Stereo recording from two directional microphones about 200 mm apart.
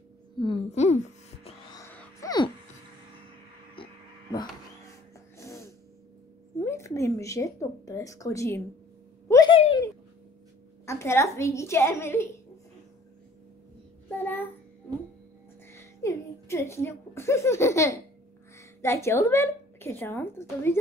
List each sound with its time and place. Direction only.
0.4 s music: 30° left (ahead or behind)
1.8 s a sound: 15° left (ahead or behind)
3.7 s hum: 25° left (ahead or behind)
5.4 s a sound: 15° left (ahead or behind)
6.6 s a woman's voice: 15° left (ahead or behind)
9.3 s a sound: 20° left (ahead or behind)
10.9 s a woman's voice: 15° left (ahead or behind)
14.1 s child singing: 10° left (ahead or behind)
15.7 s music: 15° left (ahead or behind)
18.6 s a woman's voice: 15° left (ahead or behind)